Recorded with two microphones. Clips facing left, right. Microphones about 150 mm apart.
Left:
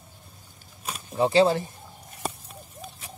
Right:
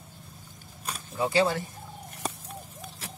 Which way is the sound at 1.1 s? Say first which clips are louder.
Left 5 dB; 25° left (ahead or behind).